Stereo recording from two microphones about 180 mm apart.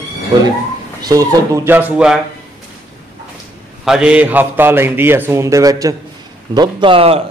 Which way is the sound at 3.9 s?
5° right (ahead or behind).